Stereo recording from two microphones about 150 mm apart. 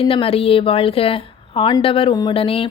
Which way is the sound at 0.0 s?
40° left (ahead or behind).